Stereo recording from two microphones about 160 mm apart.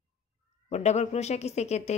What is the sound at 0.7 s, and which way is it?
Speech, 45° left (ahead or behind).